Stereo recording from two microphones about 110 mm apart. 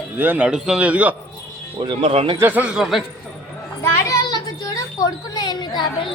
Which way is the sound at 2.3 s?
15° right (ahead or behind).